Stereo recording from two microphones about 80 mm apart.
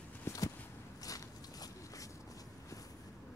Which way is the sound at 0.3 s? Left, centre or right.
Left.